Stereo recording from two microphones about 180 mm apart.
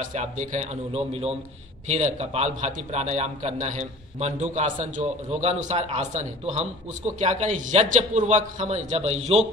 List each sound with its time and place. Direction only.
0.0 s a man's voice: 45° right (ahead or behind)